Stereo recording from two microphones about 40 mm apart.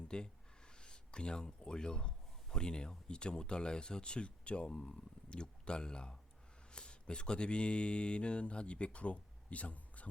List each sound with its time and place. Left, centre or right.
0.1 s a man's voice: left